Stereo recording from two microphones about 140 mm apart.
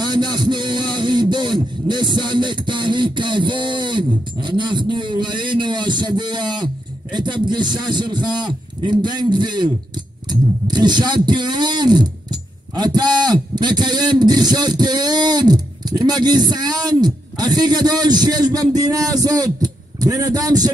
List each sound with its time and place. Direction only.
0.0 s speech: 30° right (ahead or behind)